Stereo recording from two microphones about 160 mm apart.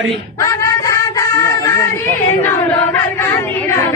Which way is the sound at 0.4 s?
20° left (ahead or behind).